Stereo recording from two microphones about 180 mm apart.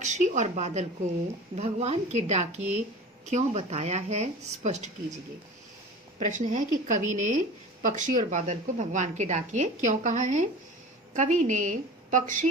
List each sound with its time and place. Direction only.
0.0 s speech: 40° right (ahead or behind)
6.1 s a woman's voice: 45° right (ahead or behind)